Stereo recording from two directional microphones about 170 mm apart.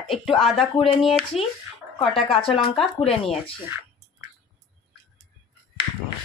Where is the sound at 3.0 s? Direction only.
35° left (ahead or behind).